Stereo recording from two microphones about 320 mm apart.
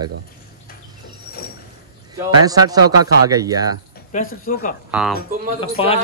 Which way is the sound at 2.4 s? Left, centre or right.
Centre.